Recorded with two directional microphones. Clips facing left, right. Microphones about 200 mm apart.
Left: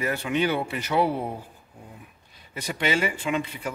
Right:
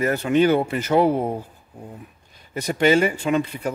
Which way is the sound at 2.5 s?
45° right (ahead or behind).